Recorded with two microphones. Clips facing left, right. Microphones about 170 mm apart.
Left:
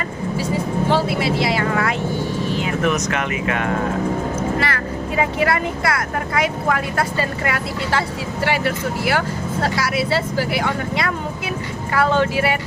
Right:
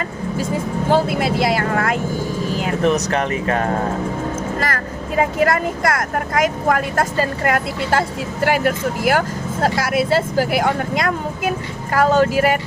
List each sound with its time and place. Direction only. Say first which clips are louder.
0.3 s speech: even; 45° right (ahead or behind)
4.6 s speech: even; 45° right (ahead or behind)